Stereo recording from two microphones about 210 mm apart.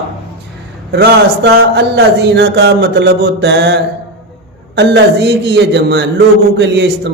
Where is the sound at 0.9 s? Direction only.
55° right (ahead or behind).